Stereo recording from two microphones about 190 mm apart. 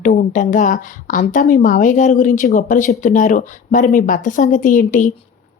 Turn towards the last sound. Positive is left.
turn(degrees=45)  # may be behind; listen again after turning